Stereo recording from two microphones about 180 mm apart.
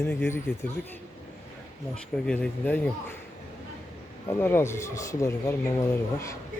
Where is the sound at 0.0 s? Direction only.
10° left (ahead or behind).